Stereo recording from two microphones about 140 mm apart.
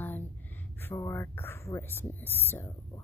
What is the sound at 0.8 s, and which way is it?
Speech, 15° left (ahead or behind).